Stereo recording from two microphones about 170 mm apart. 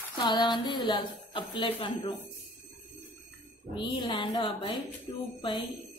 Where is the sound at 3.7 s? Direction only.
30° left (ahead or behind).